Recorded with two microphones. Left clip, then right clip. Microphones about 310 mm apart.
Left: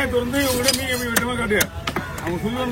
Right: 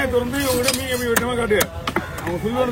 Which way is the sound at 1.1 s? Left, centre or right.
Centre.